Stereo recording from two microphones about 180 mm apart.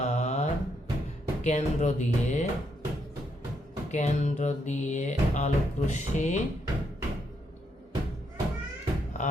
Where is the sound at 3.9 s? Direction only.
40° left (ahead or behind).